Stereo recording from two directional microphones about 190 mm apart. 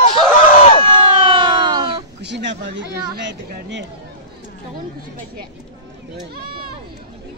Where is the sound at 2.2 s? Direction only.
65° right (ahead or behind).